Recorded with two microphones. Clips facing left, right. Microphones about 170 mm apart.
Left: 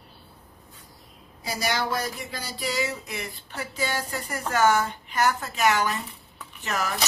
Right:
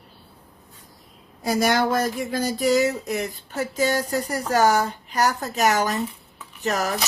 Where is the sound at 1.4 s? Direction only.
50° right (ahead or behind).